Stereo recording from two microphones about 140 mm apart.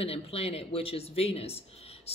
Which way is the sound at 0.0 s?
45° left (ahead or behind).